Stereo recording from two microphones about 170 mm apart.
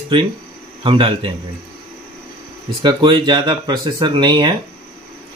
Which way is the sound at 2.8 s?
25° right (ahead or behind).